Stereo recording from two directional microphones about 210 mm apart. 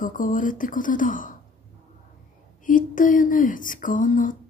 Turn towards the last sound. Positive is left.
turn(degrees=40)  # may be behind; listen again after turning